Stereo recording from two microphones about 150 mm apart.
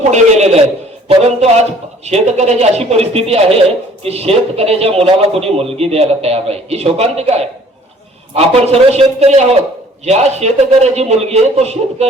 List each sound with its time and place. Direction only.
0.1 s speech: 50° right (ahead or behind)